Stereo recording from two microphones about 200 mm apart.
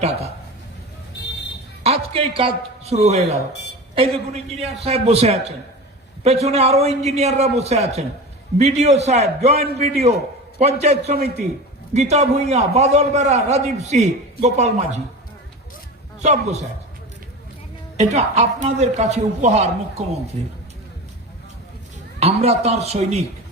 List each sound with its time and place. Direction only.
1.8 s speech: 30° right (ahead or behind)
4.8 s a man's voice: 30° right (ahead or behind)
16.2 s a man's voice: 35° right (ahead or behind)
17.9 s a man's voice: 35° right (ahead or behind)
22.2 s a man's voice: 30° right (ahead or behind)